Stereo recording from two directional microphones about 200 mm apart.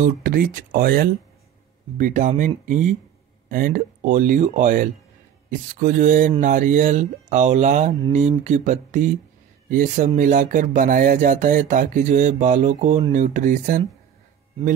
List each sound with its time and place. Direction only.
0.0 s speech: 45° right (ahead or behind)